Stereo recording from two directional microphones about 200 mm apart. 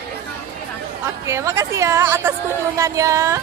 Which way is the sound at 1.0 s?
15° right (ahead or behind).